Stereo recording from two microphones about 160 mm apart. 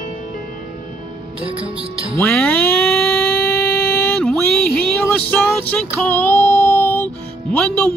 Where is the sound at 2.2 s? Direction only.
10° left (ahead or behind).